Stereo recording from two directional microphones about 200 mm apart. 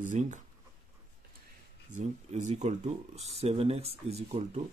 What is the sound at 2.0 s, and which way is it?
Speech, 35° right (ahead or behind).